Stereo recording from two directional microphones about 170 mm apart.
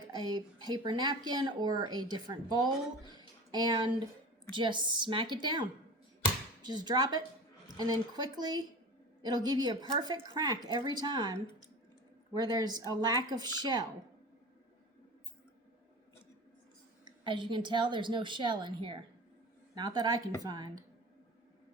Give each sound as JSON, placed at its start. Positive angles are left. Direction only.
{"t": 0.1, "sound": "a woman's voice", "side_deg": -25}
{"t": 3.1, "sound": "a sound", "side_deg": -25}
{"t": 4.5, "sound": "a woman's voice", "side_deg": -30}
{"t": 6.7, "sound": "a woman's voice", "side_deg": -25}
{"t": 17.2, "sound": "a woman's voice", "side_deg": -30}